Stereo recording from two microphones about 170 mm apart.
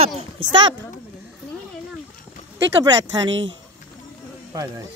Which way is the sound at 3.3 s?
90° right.